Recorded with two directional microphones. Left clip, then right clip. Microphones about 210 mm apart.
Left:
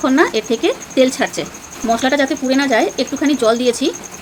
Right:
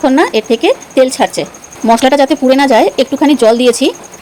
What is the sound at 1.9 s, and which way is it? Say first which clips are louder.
Speech: right 7 dB; 30° right (ahead or behind).